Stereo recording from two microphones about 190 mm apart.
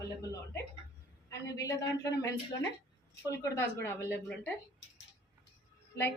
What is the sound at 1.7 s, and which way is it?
Speech, 15° left (ahead or behind).